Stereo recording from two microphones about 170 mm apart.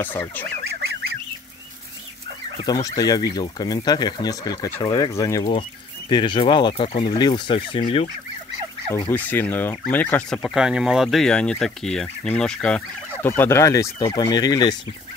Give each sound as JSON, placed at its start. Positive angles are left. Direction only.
{"t": 0.0, "sound": "speech", "side_deg": 10}
{"t": 2.5, "sound": "speech", "side_deg": 25}
{"t": 9.1, "sound": "speech", "side_deg": 10}